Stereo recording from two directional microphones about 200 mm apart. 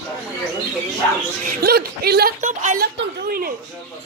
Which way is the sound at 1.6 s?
50° right (ahead or behind).